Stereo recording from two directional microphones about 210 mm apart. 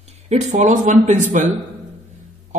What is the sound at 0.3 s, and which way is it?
A man's voice, 35° right (ahead or behind).